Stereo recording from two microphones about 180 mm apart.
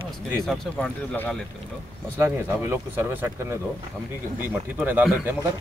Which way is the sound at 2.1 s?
15° right (ahead or behind).